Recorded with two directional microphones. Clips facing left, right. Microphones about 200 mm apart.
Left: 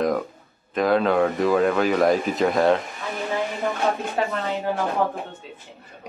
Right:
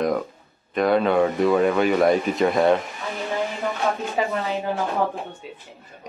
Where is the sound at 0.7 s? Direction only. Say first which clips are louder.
Right 1 dB; centre (ahead or behind).